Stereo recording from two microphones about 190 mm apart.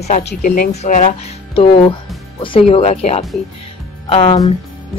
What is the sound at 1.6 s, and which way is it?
Speech, 25° left (ahead or behind).